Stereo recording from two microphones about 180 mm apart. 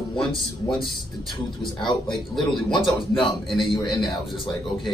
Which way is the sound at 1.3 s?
25° left (ahead or behind).